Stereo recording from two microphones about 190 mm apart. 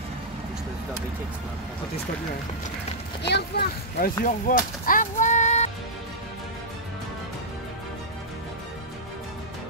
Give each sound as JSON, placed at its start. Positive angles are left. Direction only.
{"t": 3.3, "sound": "speech", "side_deg": 60}
{"t": 4.2, "sound": "speech", "side_deg": 45}